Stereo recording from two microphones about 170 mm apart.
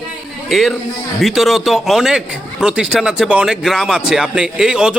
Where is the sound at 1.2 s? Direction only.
Centre (ahead or behind).